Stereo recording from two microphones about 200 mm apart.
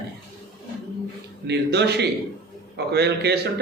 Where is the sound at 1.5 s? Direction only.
55° right (ahead or behind).